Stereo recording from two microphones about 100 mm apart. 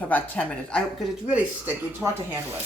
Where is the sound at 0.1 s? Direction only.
10° left (ahead or behind).